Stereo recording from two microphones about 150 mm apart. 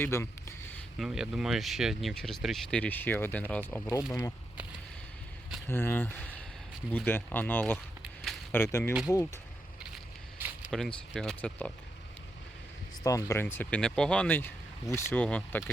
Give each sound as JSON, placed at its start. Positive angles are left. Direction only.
{"t": 0.0, "sound": "speech", "side_deg": 15}
{"t": 0.9, "sound": "speech", "side_deg": -5}
{"t": 5.6, "sound": "speech", "side_deg": 15}
{"t": 8.0, "sound": "a sound", "side_deg": 0}
{"t": 8.5, "sound": "speech", "side_deg": 15}
{"t": 9.8, "sound": "a sound", "side_deg": -10}
{"t": 10.7, "sound": "speech", "side_deg": 0}
{"t": 13.0, "sound": "speech", "side_deg": 20}